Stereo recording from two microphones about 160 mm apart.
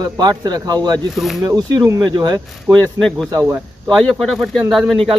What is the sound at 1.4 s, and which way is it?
Speech, 25° right (ahead or behind).